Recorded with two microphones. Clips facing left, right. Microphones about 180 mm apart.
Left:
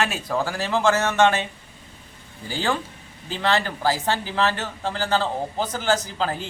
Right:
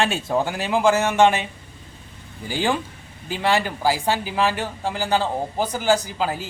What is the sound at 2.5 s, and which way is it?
Speech, 15° right (ahead or behind).